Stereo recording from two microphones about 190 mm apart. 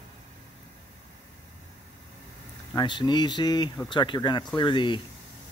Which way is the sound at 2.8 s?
25° left (ahead or behind).